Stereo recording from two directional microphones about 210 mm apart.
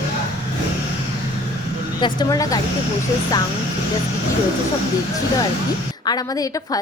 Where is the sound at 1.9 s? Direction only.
20° left (ahead or behind).